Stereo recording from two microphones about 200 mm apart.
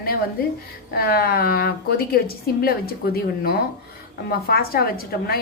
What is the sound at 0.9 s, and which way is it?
A woman's voice, 50° left (ahead or behind).